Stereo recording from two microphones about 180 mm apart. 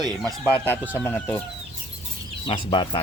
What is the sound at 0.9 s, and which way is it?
Speech, 10° left (ahead or behind).